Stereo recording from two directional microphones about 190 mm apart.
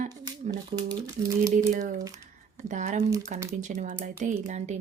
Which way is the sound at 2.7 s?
40° right (ahead or behind).